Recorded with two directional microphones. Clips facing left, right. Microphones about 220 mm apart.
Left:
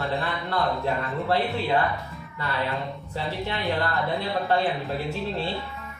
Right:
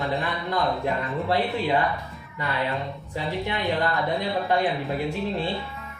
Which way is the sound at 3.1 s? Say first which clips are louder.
Right 2 dB; 15° right (ahead or behind).